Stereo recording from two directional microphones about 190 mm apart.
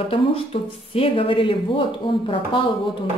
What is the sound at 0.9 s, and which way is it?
Speech, 30° left (ahead or behind).